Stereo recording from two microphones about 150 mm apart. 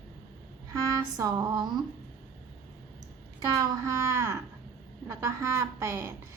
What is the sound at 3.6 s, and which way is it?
A woman's voice, 20° right (ahead or behind).